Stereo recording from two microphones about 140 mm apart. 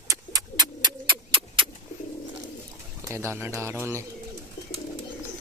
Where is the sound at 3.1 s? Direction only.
20° right (ahead or behind).